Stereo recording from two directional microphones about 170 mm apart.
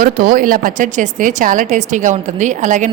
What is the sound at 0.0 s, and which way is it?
Speech, 55° right (ahead or behind).